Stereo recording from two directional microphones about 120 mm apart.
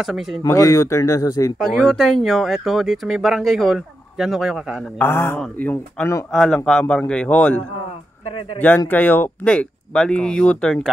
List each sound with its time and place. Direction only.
0.0 s speech: centre (ahead or behind)
0.4 s speech: 25° left (ahead or behind)
1.8 s speech: centre (ahead or behind)
4.9 s speech: 20° left (ahead or behind)
6.3 s speech: 5° left (ahead or behind)
8.3 s speech: 45° left (ahead or behind)
8.5 s speech: 15° left (ahead or behind)